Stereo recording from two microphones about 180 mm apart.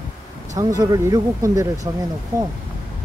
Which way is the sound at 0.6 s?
20° right (ahead or behind).